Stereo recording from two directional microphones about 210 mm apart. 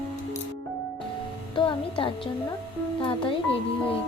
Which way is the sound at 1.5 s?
25° left (ahead or behind).